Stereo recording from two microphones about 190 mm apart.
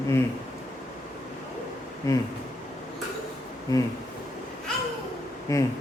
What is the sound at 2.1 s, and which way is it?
Speech, 15° left (ahead or behind).